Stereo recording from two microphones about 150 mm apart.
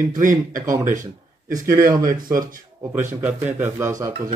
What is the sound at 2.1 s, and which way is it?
Speech, 70° right (ahead or behind).